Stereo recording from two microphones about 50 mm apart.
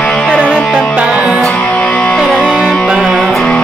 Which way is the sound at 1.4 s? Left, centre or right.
Left.